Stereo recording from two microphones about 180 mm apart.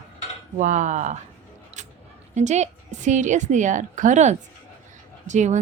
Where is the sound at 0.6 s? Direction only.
45° right (ahead or behind).